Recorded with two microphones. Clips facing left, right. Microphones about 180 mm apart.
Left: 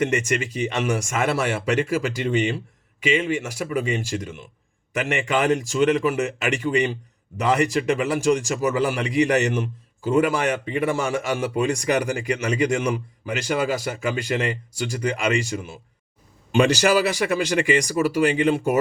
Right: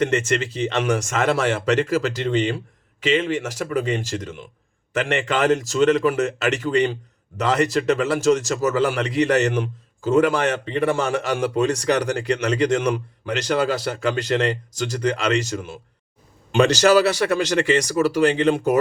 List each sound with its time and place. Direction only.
0.0 s a man's voice: 15° left (ahead or behind)